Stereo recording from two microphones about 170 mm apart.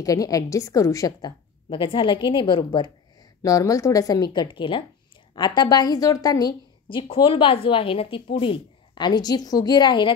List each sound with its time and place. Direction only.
0.0 s a woman's voice: 20° left (ahead or behind)